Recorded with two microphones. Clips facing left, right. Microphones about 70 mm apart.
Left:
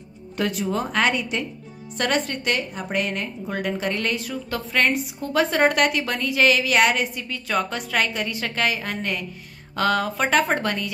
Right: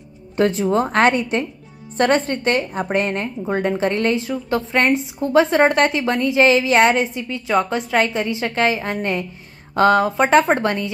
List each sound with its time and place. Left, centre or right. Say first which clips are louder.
0.4 s a woman's voice: right 7 dB; right
0.7 s a woman's voice: right 5 dB; right